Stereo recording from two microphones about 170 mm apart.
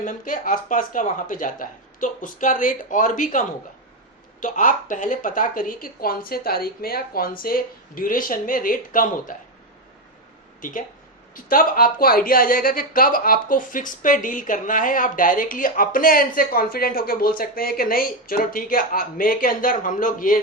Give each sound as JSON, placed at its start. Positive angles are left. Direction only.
{"t": 0.0, "sound": "speech", "side_deg": 50}
{"t": 10.6, "sound": "speech", "side_deg": 50}